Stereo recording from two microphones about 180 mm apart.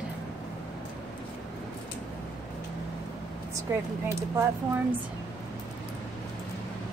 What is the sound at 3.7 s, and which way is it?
Speech, 15° right (ahead or behind).